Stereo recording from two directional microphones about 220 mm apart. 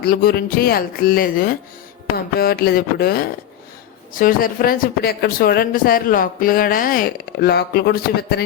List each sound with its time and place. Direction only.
0.0 s speech: 45° left (ahead or behind)